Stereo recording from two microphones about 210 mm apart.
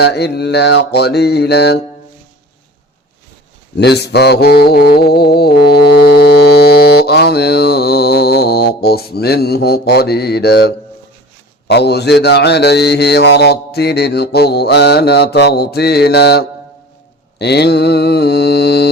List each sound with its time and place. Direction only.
0.0 s mantra: 50° left (ahead or behind)
3.8 s mantra: 50° left (ahead or behind)